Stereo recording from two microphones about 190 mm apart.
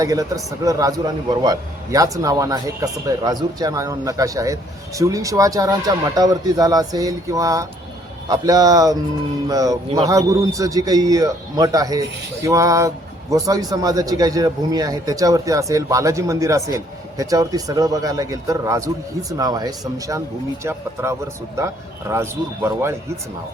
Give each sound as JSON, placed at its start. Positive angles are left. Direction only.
{"t": 0.0, "sound": "a man's voice", "side_deg": -20}